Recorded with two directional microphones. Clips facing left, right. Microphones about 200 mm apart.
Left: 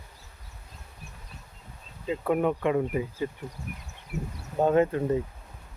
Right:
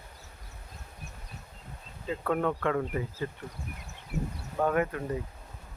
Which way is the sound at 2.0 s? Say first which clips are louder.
Left 4 dB; 15° left (ahead or behind).